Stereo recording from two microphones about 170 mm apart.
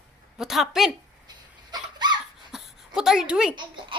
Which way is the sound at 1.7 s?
25° right (ahead or behind).